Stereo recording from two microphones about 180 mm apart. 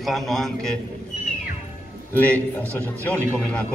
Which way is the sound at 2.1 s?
10° left (ahead or behind).